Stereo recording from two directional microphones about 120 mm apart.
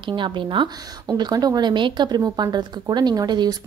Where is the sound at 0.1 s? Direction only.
40° right (ahead or behind).